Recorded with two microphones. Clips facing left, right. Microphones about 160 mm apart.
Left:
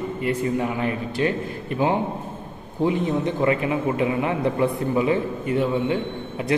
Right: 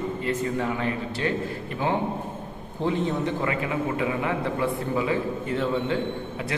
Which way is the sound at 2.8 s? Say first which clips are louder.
Left 3 dB; 15° left (ahead or behind).